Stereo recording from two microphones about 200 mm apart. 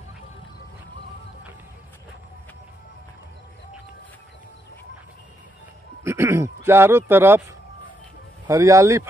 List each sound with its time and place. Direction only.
6.0 s speech: 15° right (ahead or behind)
8.5 s speech: 15° right (ahead or behind)